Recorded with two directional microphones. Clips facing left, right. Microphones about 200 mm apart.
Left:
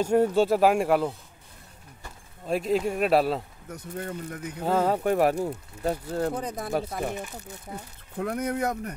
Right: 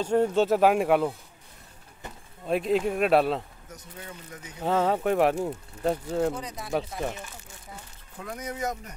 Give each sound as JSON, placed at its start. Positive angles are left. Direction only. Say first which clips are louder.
{"t": 0.0, "sound": "speech", "louder": "left 1 dB", "side_deg": 10}
{"t": 2.4, "sound": "speech", "louder": "right 1 dB", "side_deg": 0}
{"t": 3.7, "sound": "speech", "louder": "left 9 dB", "side_deg": 55}
{"t": 4.6, "sound": "speech", "louder": "even", "side_deg": 5}
{"t": 6.0, "sound": "speech", "louder": "right 2 dB", "side_deg": -5}
{"t": 6.3, "sound": "speech", "louder": "left 2 dB", "side_deg": 55}